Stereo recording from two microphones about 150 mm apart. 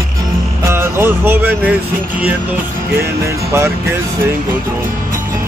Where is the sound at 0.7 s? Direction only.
15° right (ahead or behind).